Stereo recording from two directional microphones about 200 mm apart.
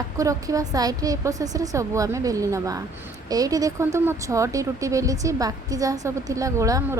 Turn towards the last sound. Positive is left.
turn(degrees=-15)  # may be behind; listen again after turning